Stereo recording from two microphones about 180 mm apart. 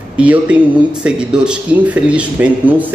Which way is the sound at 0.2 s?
5° right (ahead or behind).